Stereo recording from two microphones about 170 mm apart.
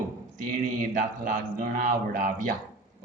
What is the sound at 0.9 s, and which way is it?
A man's voice, 55° right (ahead or behind).